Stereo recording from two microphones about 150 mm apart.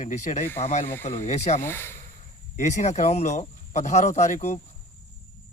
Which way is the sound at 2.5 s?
50° left (ahead or behind).